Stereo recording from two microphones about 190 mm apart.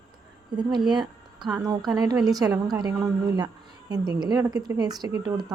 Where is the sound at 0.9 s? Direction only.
25° right (ahead or behind).